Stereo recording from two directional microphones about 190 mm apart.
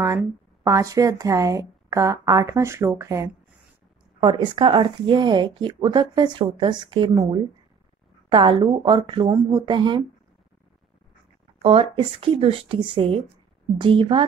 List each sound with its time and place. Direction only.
0.0 s speech: 15° right (ahead or behind)
4.2 s speech: 25° right (ahead or behind)
11.6 s speech: 30° right (ahead or behind)